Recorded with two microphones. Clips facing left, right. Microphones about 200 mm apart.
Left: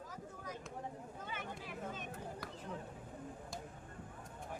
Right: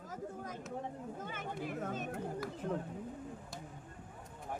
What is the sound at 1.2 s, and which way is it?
Chatter, 50° right (ahead or behind).